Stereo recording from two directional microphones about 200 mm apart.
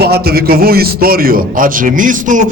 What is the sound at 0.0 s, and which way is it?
A man's voice, 50° right (ahead or behind).